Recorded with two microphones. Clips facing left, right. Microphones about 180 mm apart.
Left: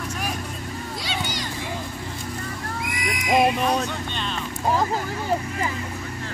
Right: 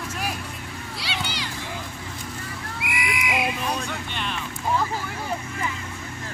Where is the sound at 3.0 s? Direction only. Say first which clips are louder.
Left 8 dB; 40° left (ahead or behind).